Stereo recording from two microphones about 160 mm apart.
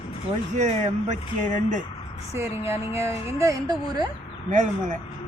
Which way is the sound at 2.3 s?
15° right (ahead or behind).